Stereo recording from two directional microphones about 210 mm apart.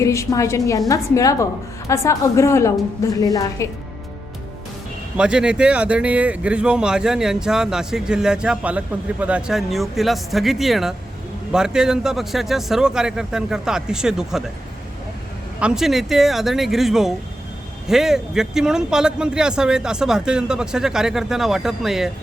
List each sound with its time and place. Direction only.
0.0 s a woman's voice: 15° left (ahead or behind)
5.1 s speech: 5° right (ahead or behind)
15.6 s speech: centre (ahead or behind)